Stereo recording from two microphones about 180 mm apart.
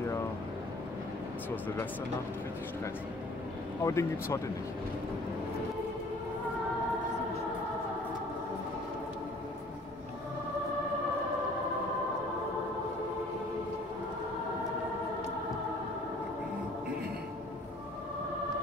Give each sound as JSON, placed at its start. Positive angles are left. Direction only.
{"t": 3.8, "sound": "speech", "side_deg": 15}